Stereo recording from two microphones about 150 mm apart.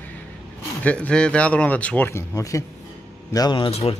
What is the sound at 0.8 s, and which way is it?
A man's voice, 10° left (ahead or behind).